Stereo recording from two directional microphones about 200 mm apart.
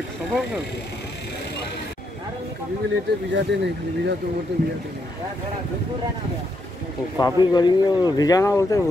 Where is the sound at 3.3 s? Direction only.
60° right (ahead or behind).